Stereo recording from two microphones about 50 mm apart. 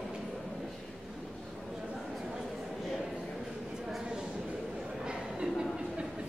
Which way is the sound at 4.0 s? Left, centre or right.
Centre.